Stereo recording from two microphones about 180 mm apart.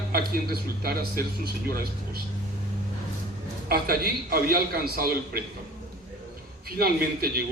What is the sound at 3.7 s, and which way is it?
A man's voice, 55° right (ahead or behind).